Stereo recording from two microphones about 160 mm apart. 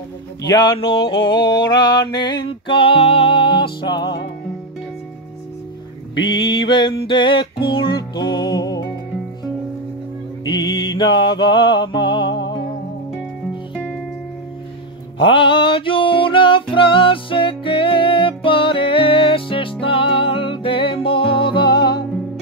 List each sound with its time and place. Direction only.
0.5 s mantra: 30° left (ahead or behind)
6.1 s mantra: 30° left (ahead or behind)
10.4 s mantra: 25° left (ahead or behind)
15.1 s a sound: 35° left (ahead or behind)
16.7 s music: 35° left (ahead or behind)